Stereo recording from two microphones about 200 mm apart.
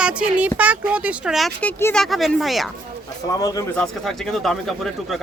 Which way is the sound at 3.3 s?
20° left (ahead or behind).